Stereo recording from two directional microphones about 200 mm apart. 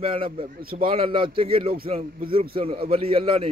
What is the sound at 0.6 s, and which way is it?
Speech, 45° right (ahead or behind).